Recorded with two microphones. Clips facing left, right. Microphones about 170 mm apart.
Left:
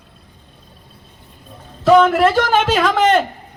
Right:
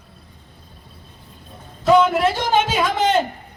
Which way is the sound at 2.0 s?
80° left.